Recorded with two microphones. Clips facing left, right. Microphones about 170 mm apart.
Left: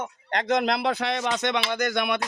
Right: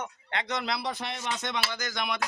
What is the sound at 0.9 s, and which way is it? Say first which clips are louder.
Speech: left 8 dB; 85° left.